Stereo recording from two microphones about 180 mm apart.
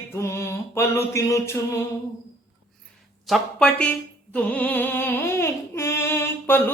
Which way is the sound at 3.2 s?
Centre (ahead or behind).